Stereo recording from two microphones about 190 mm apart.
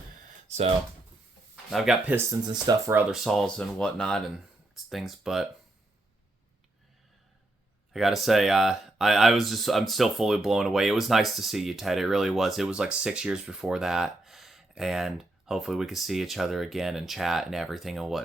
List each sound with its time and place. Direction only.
0.4 s speech: 35° right (ahead or behind)
1.7 s speech: centre (ahead or behind)
2.1 s speech: 20° right (ahead or behind); by 5.5 s centre (ahead or behind)
7.9 s speech: centre (ahead or behind)